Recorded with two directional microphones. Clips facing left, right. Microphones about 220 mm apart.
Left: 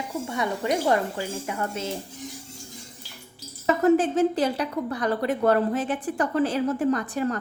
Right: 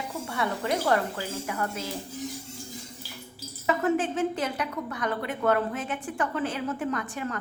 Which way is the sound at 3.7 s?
35° left (ahead or behind).